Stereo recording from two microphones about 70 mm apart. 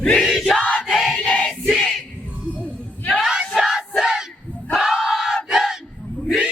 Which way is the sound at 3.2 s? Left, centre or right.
Centre.